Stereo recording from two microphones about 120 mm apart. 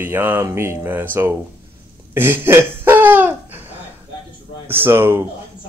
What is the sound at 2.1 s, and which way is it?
Laughter, 20° right (ahead or behind).